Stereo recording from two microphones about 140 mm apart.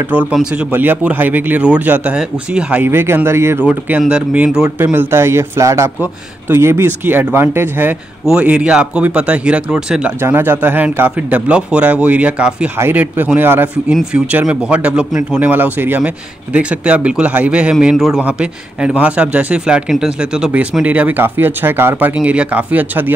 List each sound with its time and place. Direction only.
0.1 s a man's voice: 10° right (ahead or behind)